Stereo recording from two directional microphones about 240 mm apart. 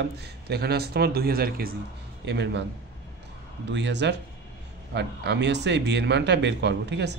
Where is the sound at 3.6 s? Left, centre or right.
Right.